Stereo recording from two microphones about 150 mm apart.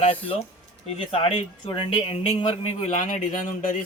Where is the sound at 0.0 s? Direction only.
40° left (ahead or behind).